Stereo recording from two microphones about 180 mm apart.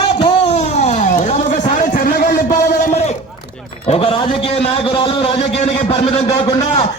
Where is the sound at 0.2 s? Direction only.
35° left (ahead or behind).